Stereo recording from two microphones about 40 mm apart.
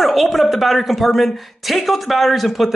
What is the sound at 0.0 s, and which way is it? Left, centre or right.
A woman's voice, centre.